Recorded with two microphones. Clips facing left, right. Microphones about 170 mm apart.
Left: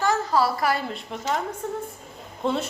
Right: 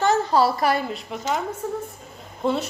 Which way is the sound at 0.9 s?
Centre (ahead or behind).